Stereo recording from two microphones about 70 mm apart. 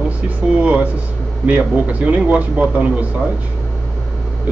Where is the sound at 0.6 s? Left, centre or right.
Right.